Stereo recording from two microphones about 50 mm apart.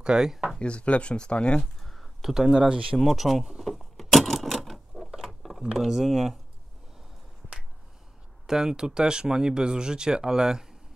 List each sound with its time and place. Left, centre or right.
0.0 s speech: centre
0.6 s speech: left
1.6 s a sound: centre
2.3 s speech: centre
3.0 s a sound: centre
5.6 s speech: centre
8.5 s speech: centre